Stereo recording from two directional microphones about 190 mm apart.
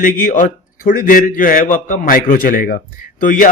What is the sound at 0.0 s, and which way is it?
A man's voice, 45° left (ahead or behind).